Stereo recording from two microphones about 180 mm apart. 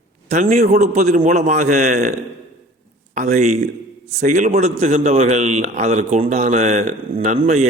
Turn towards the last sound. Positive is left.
turn(degrees=-40)  # may be behind; listen again after turning